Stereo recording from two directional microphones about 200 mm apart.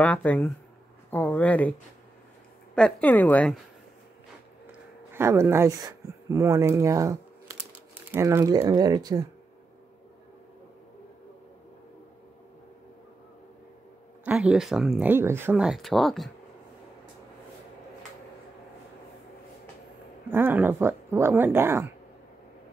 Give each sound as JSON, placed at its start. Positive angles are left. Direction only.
{"t": 0.0, "sound": "a woman's voice", "side_deg": 10}
{"t": 5.1, "sound": "speech", "side_deg": -15}
{"t": 14.2, "sound": "speech", "side_deg": -5}
{"t": 20.2, "sound": "speech", "side_deg": -10}